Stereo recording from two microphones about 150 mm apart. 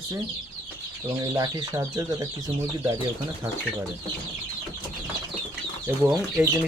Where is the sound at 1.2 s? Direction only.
20° right (ahead or behind).